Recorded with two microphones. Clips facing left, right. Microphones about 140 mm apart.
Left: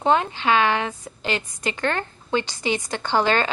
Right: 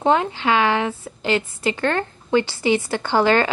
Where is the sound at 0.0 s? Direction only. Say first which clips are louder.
Right 2 dB; 15° right (ahead or behind).